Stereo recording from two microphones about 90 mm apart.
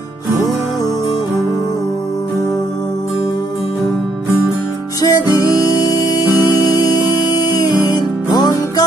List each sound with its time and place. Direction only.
5.0 s music: 45° left (ahead or behind)